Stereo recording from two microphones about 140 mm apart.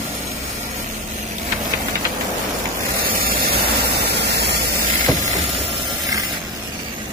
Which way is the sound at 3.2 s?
90° right.